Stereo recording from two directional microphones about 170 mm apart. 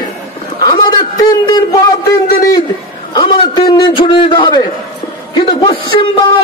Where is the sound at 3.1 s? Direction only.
30° left (ahead or behind).